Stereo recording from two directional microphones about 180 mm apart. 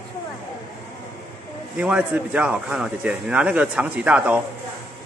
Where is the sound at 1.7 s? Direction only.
10° right (ahead or behind).